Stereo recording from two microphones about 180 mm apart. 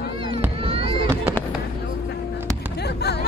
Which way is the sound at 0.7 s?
30° right (ahead or behind).